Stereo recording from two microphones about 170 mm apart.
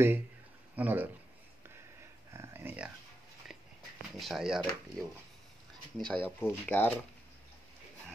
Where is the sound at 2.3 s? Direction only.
15° right (ahead or behind).